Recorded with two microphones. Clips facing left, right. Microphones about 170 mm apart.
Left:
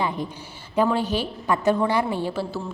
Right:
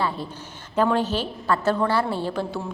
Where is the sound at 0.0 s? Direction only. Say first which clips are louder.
Left 1 dB; 15° left (ahead or behind).